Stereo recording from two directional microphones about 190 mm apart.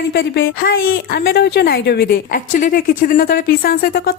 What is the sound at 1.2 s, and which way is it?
A woman's voice, 55° left (ahead or behind).